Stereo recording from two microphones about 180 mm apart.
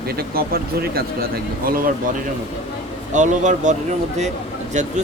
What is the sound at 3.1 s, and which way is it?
Speech, 40° right (ahead or behind).